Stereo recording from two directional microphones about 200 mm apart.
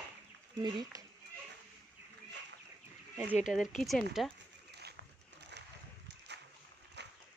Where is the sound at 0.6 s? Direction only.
20° right (ahead or behind).